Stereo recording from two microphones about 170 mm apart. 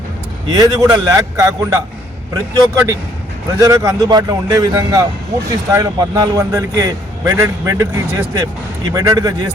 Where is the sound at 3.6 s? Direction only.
20° right (ahead or behind).